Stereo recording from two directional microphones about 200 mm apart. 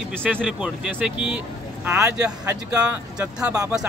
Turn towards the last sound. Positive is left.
turn(degrees=-5)  # may be behind; listen again after turning